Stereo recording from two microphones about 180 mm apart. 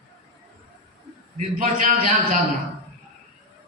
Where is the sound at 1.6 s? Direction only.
45° right (ahead or behind).